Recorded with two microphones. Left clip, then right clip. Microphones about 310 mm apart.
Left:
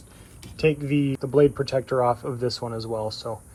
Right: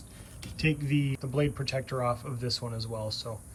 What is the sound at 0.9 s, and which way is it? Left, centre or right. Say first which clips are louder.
Speech: left 7 dB; centre.